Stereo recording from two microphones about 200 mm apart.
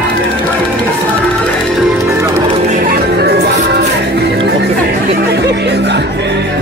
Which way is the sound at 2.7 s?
45° right (ahead or behind).